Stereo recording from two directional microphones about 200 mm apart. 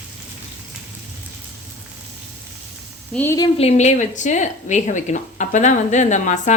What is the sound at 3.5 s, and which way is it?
Speech, 30° left (ahead or behind).